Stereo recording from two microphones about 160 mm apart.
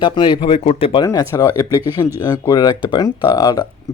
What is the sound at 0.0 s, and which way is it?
Speech, 30° left (ahead or behind).